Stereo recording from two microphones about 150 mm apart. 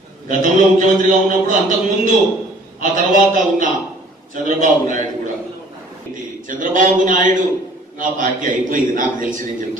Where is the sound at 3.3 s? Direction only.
60° right (ahead or behind).